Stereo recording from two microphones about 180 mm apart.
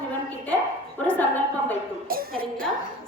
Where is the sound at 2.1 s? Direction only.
55° right (ahead or behind).